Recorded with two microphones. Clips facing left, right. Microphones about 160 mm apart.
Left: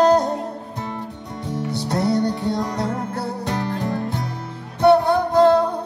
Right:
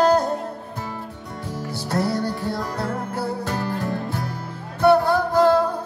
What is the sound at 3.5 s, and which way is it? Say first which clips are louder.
Music: left 2 dB; 20° left (ahead or behind).